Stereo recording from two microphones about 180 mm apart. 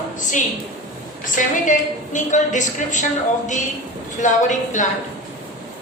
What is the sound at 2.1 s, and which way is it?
A woman's voice, 45° left (ahead or behind).